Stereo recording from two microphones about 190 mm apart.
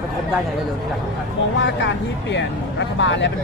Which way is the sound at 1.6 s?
65° left (ahead or behind).